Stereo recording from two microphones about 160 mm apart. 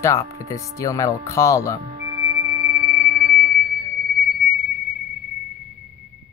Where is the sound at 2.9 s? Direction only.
55° right (ahead or behind).